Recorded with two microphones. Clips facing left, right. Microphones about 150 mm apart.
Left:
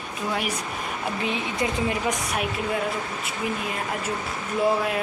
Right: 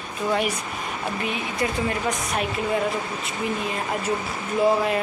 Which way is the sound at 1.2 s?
20° left (ahead or behind).